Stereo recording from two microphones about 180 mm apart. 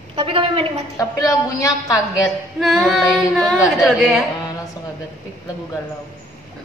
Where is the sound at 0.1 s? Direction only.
30° right (ahead or behind).